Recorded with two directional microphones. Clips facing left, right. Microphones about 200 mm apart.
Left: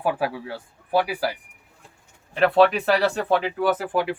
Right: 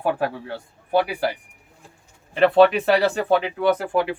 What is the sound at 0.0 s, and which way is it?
Speech, 5° left (ahead or behind).